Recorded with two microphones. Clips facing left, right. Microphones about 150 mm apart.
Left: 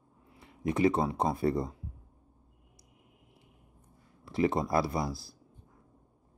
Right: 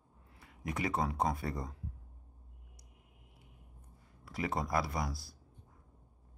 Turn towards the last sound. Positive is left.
turn(degrees=25)  # may be behind; listen again after turning